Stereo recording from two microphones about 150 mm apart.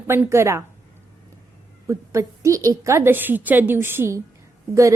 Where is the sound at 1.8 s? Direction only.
20° right (ahead or behind).